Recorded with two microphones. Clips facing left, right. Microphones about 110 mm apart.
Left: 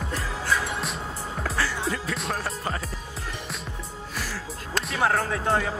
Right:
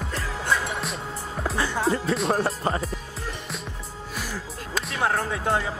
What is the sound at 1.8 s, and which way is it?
Music, 30° right (ahead or behind).